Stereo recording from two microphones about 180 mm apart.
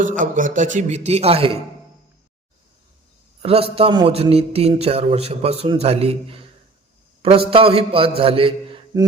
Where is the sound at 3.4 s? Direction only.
30° right (ahead or behind).